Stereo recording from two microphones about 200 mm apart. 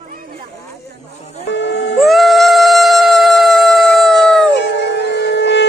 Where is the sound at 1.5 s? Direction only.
60° left (ahead or behind).